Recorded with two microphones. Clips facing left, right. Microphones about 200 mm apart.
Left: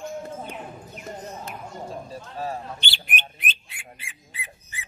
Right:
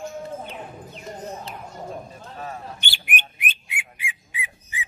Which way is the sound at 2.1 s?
30° left (ahead or behind).